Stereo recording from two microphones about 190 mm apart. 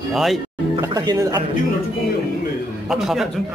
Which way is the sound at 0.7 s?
20° right (ahead or behind).